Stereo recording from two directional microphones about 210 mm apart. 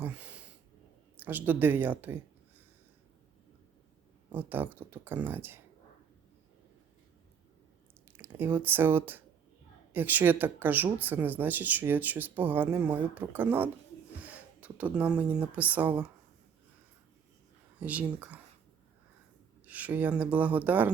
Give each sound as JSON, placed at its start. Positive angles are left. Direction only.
{"t": 0.0, "sound": "a sound", "side_deg": -5}
{"t": 1.1, "sound": "speech", "side_deg": -10}
{"t": 4.3, "sound": "speech", "side_deg": -10}
{"t": 8.1, "sound": "speech", "side_deg": -10}
{"t": 17.7, "sound": "speech", "side_deg": -5}
{"t": 19.6, "sound": "speech", "side_deg": -5}